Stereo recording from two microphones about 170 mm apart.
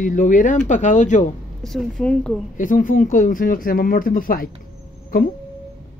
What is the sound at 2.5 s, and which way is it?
Speech, 50° left (ahead or behind).